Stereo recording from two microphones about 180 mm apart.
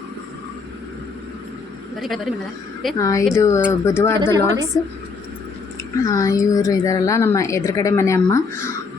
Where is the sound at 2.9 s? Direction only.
20° left (ahead or behind).